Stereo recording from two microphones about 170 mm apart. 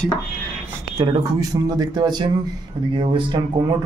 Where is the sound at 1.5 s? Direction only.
25° right (ahead or behind).